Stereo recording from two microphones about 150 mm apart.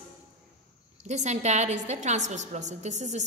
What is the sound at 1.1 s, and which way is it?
A woman's voice, 50° right (ahead or behind).